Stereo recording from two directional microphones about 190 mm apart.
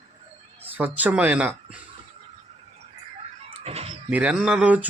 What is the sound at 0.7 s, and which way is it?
A man's voice, 10° right (ahead or behind).